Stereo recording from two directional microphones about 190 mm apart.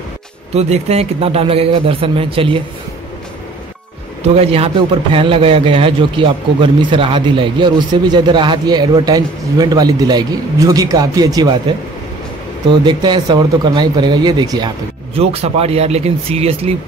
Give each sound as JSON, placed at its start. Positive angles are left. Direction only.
{"t": 0.6, "sound": "a man's voice", "side_deg": -35}
{"t": 4.4, "sound": "a man's voice", "side_deg": -30}
{"t": 12.8, "sound": "a man's voice", "side_deg": -25}
{"t": 15.1, "sound": "speech", "side_deg": -30}